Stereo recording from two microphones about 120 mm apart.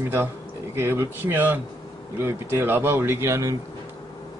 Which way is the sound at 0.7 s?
20° right (ahead or behind).